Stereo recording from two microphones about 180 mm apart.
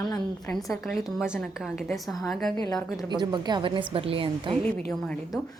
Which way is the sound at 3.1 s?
25° right (ahead or behind).